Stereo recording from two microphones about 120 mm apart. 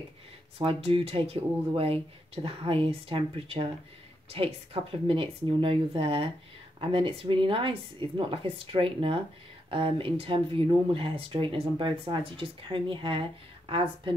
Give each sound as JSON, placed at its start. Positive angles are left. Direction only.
{"t": 0.6, "sound": "a woman's voice", "side_deg": -55}